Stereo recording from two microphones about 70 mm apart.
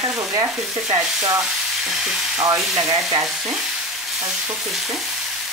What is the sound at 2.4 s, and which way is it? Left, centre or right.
Sizzle, right.